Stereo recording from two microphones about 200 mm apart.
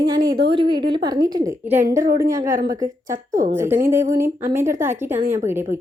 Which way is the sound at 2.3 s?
15° right (ahead or behind).